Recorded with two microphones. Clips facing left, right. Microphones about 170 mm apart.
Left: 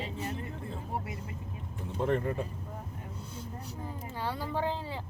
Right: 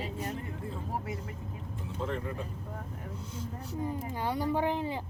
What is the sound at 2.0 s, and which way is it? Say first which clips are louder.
Speech: left 6 dB; 60° left (ahead or behind).